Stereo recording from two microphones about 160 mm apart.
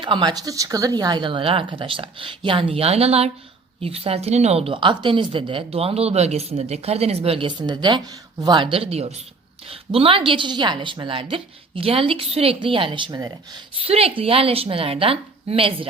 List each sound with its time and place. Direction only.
0.0 s a woman's voice: 30° right (ahead or behind)
13.8 s a woman's voice: 35° right (ahead or behind)